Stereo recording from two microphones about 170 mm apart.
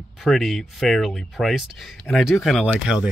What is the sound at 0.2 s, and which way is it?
Speech, centre (ahead or behind).